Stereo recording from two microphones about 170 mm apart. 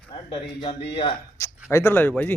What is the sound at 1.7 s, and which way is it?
Speech, 15° left (ahead or behind).